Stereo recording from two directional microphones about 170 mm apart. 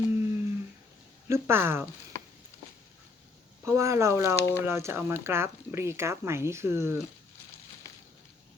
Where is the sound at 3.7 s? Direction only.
15° right (ahead or behind).